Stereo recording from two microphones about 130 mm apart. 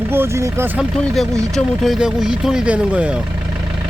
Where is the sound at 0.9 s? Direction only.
Centre (ahead or behind).